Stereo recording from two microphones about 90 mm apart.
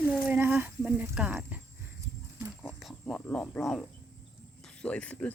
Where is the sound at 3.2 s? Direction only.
15° left (ahead or behind).